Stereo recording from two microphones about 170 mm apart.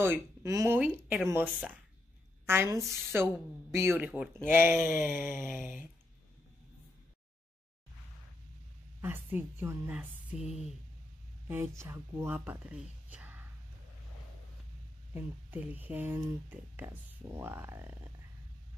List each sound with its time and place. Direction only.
0.0 s speech: 15° right (ahead or behind)
4.9 s a sound: 50° left (ahead or behind)
9.0 s speech: 10° right (ahead or behind)
15.1 s speech: 10° right (ahead or behind)